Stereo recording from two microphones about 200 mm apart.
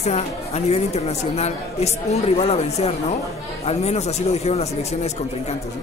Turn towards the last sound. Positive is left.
turn(degrees=30)  # may be behind; listen again after turning